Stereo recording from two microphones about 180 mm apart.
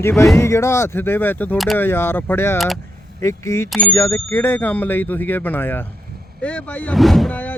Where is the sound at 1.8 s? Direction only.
10° left (ahead or behind).